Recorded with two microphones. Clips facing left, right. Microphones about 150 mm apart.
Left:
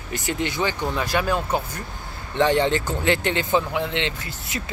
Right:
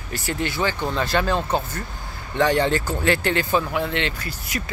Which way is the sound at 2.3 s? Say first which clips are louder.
Even; 20° left (ahead or behind).